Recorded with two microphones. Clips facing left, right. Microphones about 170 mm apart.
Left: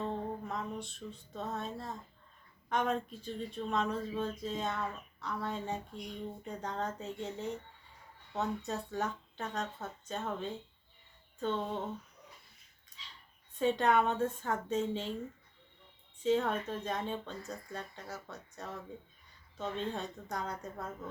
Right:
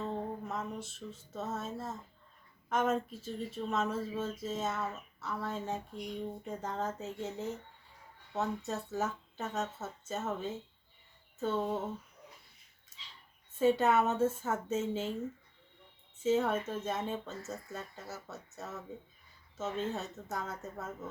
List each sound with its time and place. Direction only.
0.0 s a sound: centre (ahead or behind)
2.6 s speech: 5° right (ahead or behind)
13.5 s speech: 5° right (ahead or behind)
16.2 s speech: 5° right (ahead or behind)